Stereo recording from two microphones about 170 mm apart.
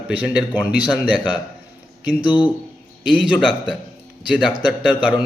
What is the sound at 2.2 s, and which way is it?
Speech, 30° left (ahead or behind).